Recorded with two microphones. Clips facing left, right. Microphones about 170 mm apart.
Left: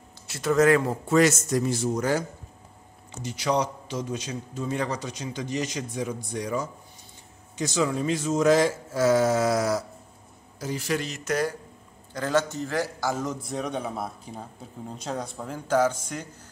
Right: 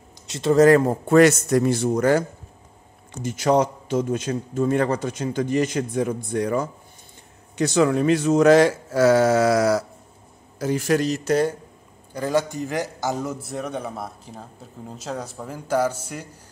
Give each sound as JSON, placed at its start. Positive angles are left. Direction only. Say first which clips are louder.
{"t": 0.3, "sound": "speech", "louder": "right 5 dB", "side_deg": -25}
{"t": 1.0, "sound": "a man's voice", "louder": "right 6 dB", "side_deg": -60}
{"t": 10.6, "sound": "speech", "louder": "right 8 dB", "side_deg": -55}
{"t": 12.1, "sound": "speech", "louder": "right 2 dB", "side_deg": -10}
{"t": 13.2, "sound": "speech", "louder": "right 1 dB", "side_deg": -5}